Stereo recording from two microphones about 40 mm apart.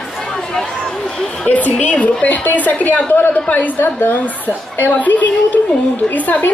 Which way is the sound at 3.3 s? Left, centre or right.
Left.